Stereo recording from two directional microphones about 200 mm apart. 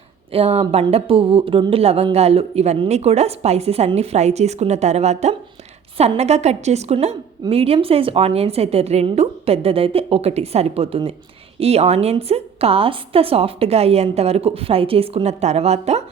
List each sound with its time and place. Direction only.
0.3 s a woman's voice: 30° right (ahead or behind)